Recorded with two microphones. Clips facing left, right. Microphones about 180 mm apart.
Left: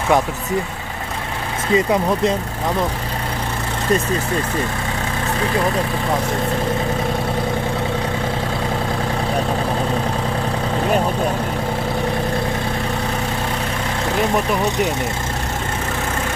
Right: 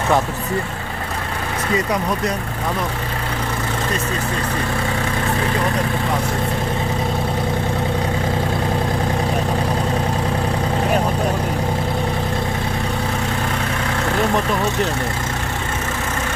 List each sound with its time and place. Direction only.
1.7 s speech: 25° left (ahead or behind)